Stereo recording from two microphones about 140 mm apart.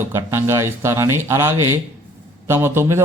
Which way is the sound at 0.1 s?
20° right (ahead or behind).